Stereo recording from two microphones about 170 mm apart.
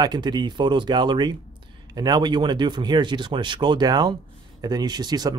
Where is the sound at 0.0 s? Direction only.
25° right (ahead or behind).